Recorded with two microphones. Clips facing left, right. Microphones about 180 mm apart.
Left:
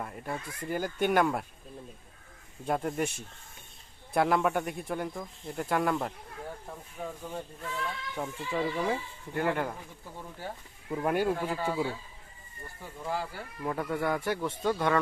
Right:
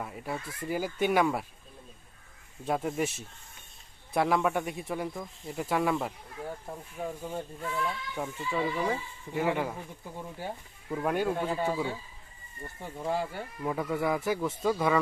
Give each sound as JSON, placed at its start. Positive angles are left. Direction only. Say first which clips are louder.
{"t": 0.0, "sound": "speech", "louder": "right 1 dB", "side_deg": -5}
{"t": 2.6, "sound": "speech", "louder": "even", "side_deg": 0}
{"t": 10.2, "sound": "speech", "louder": "right 2 dB", "side_deg": -15}
{"t": 10.8, "sound": "speech", "louder": "left 1 dB", "side_deg": 5}
{"t": 11.5, "sound": "speech", "louder": "right 2 dB", "side_deg": -20}
{"t": 12.8, "sound": "speech", "louder": "right 3 dB", "side_deg": -25}
{"t": 13.6, "sound": "speech", "louder": "right 1 dB", "side_deg": -5}